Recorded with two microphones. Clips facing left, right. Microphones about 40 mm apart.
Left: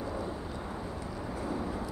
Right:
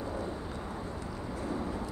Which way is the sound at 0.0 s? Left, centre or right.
Centre.